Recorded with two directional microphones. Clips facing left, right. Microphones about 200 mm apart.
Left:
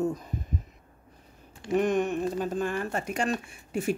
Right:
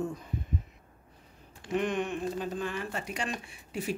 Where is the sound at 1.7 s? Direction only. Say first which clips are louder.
Left 5 dB; 45° left (ahead or behind).